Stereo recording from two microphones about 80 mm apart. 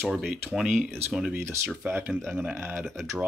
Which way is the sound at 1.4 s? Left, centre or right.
Right.